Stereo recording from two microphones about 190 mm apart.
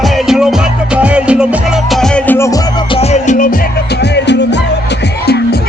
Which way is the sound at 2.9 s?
35° left (ahead or behind).